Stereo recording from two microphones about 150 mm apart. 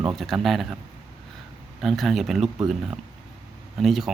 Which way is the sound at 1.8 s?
Centre (ahead or behind).